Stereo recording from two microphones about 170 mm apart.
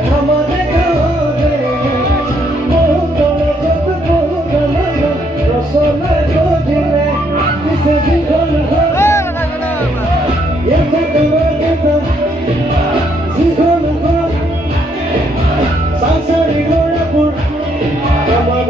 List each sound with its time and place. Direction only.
8.9 s music: 15° left (ahead or behind)